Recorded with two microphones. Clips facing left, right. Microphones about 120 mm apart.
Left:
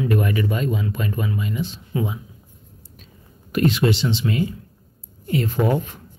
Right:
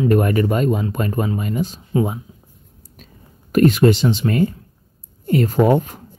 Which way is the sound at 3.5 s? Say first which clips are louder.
Right 6 dB; 45° right (ahead or behind).